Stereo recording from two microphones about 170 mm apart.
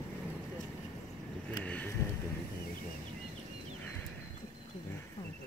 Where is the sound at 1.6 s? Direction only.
10° left (ahead or behind).